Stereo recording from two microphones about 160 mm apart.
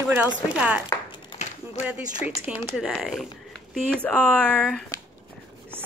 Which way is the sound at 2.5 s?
5° right (ahead or behind).